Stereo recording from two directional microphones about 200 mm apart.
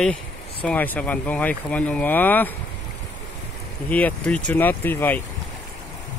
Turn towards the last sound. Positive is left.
turn(degrees=10)  # may be behind; listen again after turning